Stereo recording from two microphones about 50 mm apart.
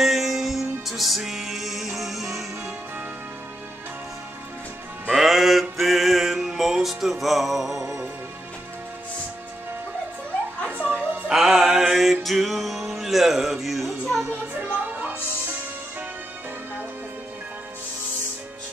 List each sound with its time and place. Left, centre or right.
0.0 s music: centre
5.1 s music: centre
10.7 s music: right
11.2 s music: centre
14.7 s music: right